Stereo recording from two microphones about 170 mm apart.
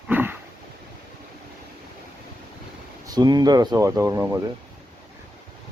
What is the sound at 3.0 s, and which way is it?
Speech, 25° right (ahead or behind).